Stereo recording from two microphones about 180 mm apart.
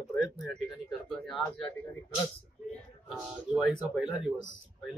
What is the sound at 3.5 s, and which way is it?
Speech, 5° right (ahead or behind).